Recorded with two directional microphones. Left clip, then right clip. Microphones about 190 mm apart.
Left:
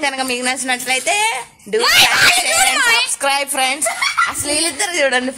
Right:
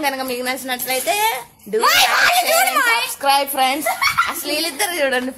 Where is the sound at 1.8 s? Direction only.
50° right (ahead or behind).